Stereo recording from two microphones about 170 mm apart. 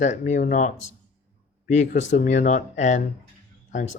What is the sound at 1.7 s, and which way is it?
Speech, 45° left (ahead or behind).